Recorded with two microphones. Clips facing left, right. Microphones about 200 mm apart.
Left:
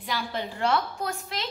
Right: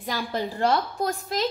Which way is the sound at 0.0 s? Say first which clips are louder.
Right 3 dB; 45° right (ahead or behind).